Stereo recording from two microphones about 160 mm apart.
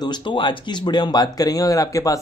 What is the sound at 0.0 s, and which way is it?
Speech, 30° left (ahead or behind).